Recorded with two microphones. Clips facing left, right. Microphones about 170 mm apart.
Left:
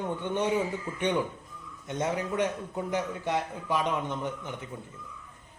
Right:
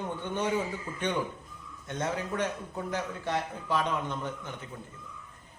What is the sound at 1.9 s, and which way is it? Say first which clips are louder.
A man's voice: left 2 dB; 15° left (ahead or behind).